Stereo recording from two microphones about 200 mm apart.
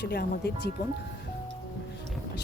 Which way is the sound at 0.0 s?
55° left (ahead or behind).